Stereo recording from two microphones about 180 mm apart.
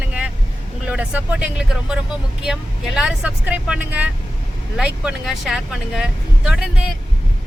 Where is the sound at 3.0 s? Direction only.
5° right (ahead or behind).